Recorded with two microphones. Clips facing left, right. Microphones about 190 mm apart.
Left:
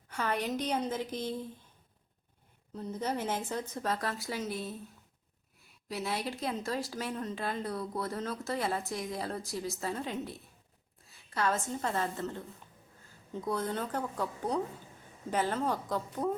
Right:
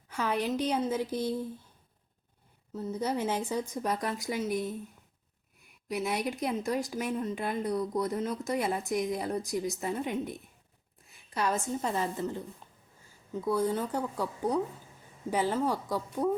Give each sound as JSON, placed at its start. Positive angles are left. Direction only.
{"t": 0.1, "sound": "a woman's voice", "side_deg": -10}
{"t": 2.7, "sound": "speech", "side_deg": -5}
{"t": 5.9, "sound": "a woman's voice", "side_deg": -15}